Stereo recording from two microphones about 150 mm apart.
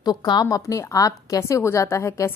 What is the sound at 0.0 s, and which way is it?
A woman's voice, 30° left (ahead or behind).